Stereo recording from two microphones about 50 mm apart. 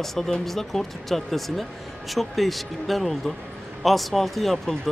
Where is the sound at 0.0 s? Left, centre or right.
Centre.